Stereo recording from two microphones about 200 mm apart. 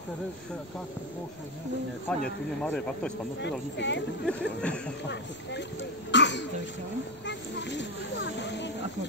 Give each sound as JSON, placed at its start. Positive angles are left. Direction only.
{"t": 2.0, "sound": "speech", "side_deg": 5}
{"t": 3.3, "sound": "speech", "side_deg": 60}
{"t": 4.3, "sound": "speech", "side_deg": 5}
{"t": 5.0, "sound": "speech", "side_deg": 60}